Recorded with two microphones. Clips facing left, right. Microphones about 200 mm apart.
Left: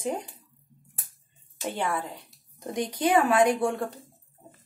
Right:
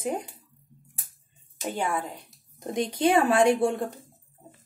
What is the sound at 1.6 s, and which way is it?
A woman's voice, 15° right (ahead or behind).